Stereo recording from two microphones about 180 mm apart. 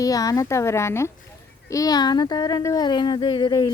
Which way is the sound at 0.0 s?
20° left (ahead or behind).